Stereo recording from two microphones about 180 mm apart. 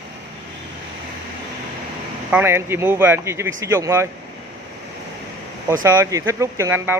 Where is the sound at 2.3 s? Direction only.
15° right (ahead or behind).